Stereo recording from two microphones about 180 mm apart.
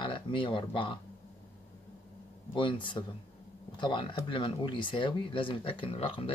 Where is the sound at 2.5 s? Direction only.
25° left (ahead or behind).